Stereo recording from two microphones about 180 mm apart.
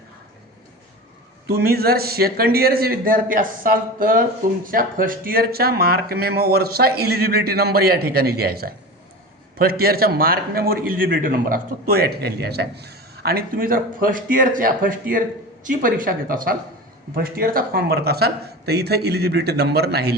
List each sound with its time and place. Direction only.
1.5 s a man's voice: 60° right (ahead or behind)